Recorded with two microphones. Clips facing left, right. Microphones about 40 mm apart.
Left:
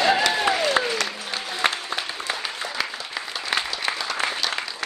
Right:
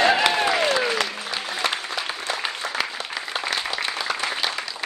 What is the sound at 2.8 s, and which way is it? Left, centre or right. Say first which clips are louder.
Applause: even; centre.